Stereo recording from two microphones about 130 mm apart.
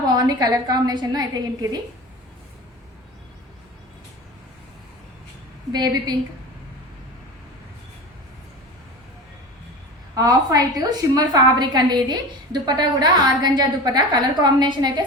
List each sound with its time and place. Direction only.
0.3 s a woman's voice: 30° right (ahead or behind)
5.7 s a woman's voice: 30° right (ahead or behind)
10.2 s a woman's voice: 30° right (ahead or behind)